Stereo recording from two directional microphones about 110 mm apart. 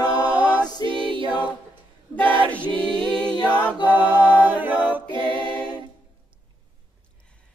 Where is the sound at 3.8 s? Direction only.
15° right (ahead or behind).